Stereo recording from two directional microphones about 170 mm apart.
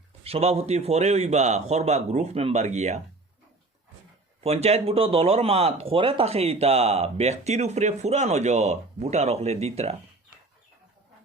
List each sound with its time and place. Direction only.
0.3 s speech: 35° right (ahead or behind)
4.4 s speech: 40° right (ahead or behind)